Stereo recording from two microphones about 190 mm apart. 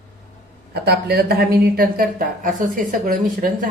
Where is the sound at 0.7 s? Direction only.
55° right (ahead or behind).